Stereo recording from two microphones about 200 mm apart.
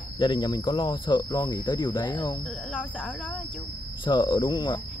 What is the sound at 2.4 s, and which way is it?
Speech, centre (ahead or behind).